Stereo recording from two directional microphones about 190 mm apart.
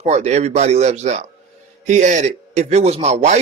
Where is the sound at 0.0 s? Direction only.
35° right (ahead or behind).